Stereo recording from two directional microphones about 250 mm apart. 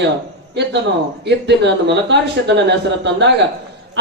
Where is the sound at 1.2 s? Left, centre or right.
Right.